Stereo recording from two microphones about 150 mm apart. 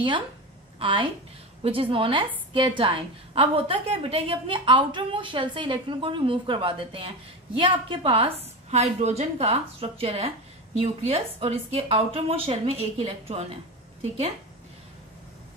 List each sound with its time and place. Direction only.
0.7 s a woman's voice: 35° right (ahead or behind)